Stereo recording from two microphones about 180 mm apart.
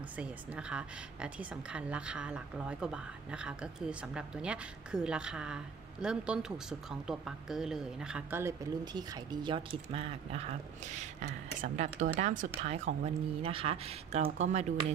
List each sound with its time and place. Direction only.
0.2 s a woman's voice: 5° right (ahead or behind); by 14.7 s 40° right (ahead or behind)